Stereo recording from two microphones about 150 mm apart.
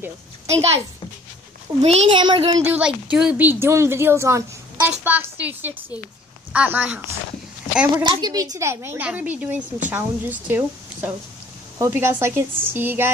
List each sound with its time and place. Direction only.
0.0 s a child's voice: 15° right (ahead or behind)
1.8 s a child's voice: 45° right (ahead or behind)
2.6 s a woman's voice: 10° right (ahead or behind)
7.9 s a woman's voice: 30° right (ahead or behind)